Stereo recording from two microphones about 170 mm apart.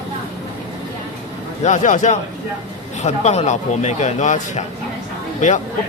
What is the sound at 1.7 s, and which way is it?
A man's voice, 45° left (ahead or behind).